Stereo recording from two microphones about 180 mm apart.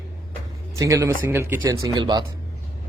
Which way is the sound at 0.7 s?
20° right (ahead or behind).